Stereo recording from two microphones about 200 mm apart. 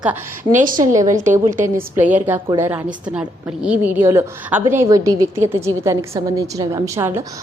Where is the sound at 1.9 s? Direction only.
10° right (ahead or behind).